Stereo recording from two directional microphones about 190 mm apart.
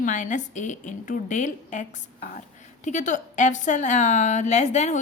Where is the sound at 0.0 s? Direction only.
40° left (ahead or behind).